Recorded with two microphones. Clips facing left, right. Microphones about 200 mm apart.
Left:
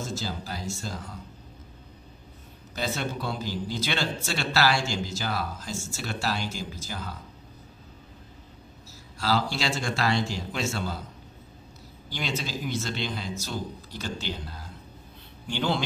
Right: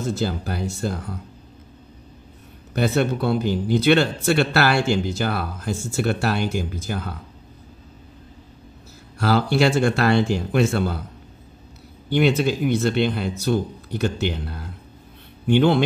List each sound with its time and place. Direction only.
0.0 s speech: 60° right (ahead or behind)
2.7 s speech: 60° right (ahead or behind)
9.2 s speech: 60° right (ahead or behind)
12.1 s a man's voice: 60° right (ahead or behind)